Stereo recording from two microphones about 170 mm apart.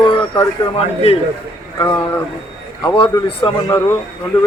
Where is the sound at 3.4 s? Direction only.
25° left (ahead or behind).